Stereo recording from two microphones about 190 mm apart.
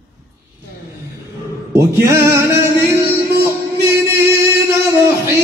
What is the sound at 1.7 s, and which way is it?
Music, 15° right (ahead or behind).